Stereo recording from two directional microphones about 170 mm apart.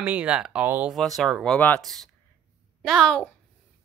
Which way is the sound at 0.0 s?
10° right (ahead or behind).